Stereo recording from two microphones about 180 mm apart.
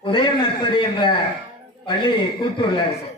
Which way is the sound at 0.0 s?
25° left (ahead or behind).